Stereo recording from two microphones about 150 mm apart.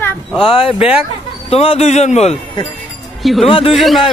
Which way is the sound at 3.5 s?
35° left (ahead or behind).